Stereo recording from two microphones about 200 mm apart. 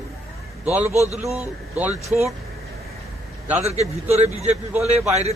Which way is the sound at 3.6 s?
30° right (ahead or behind).